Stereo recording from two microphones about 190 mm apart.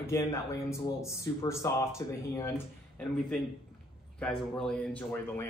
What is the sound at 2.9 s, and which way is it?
Speech, centre (ahead or behind).